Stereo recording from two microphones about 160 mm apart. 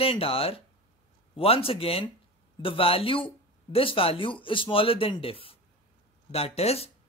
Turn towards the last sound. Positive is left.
turn(degrees=40)  # may be behind; listen again after turning